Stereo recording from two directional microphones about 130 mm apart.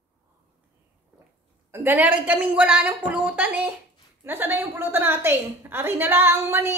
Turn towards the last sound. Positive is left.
turn(degrees=-20)  # may be behind; listen again after turning